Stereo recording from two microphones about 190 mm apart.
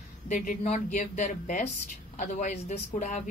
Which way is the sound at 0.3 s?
40° left (ahead or behind).